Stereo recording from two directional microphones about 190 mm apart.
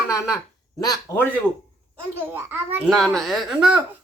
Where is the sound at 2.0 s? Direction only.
10° right (ahead or behind).